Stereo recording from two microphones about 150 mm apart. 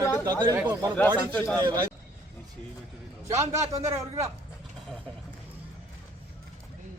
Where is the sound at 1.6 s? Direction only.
25° right (ahead or behind).